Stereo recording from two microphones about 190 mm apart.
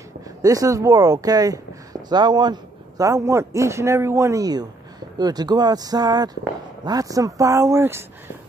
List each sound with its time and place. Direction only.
0.4 s a man's voice: 20° right (ahead or behind)